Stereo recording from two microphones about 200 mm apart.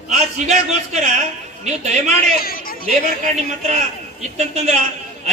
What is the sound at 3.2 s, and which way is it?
A man's voice, 40° right (ahead or behind).